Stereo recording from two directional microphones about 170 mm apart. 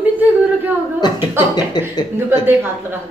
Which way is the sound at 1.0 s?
25° left (ahead or behind).